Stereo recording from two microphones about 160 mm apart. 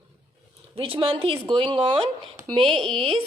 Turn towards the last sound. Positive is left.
turn(degrees=-30)  # may be behind; listen again after turning